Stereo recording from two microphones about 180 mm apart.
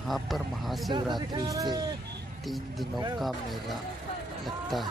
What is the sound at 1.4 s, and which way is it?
Speech, 20° right (ahead or behind).